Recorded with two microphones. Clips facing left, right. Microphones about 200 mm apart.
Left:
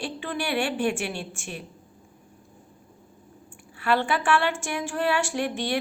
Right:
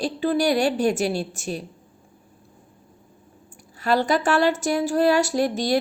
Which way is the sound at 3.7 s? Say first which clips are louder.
Right 4 dB; 40° right (ahead or behind).